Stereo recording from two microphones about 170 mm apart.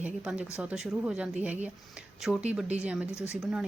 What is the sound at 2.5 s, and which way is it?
Speech, 5° right (ahead or behind).